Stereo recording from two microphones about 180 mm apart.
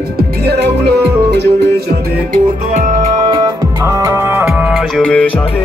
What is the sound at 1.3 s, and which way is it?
Music, 70° right (ahead or behind).